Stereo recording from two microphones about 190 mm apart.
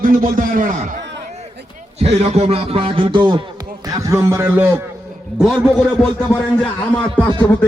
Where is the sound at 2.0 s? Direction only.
35° right (ahead or behind); by 4.7 s 10° right (ahead or behind).